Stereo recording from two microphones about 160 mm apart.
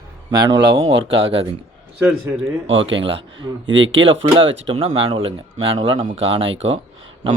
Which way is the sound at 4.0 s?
35° right (ahead or behind).